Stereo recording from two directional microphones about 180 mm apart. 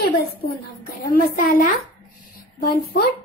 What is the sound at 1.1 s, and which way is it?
Speech, 55° left (ahead or behind).